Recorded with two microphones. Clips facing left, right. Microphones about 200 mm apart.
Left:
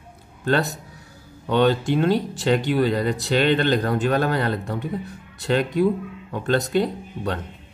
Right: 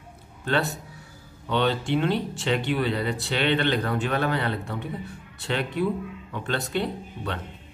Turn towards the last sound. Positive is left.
turn(degrees=40)  # may be behind; listen again after turning